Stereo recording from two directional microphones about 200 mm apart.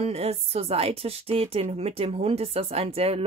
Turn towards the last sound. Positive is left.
turn(degrees=-30)  # may be behind; listen again after turning